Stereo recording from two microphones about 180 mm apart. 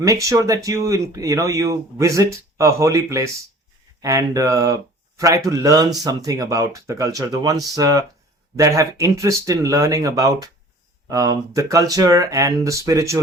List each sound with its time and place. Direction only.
0.0 s speech: 15° right (ahead or behind)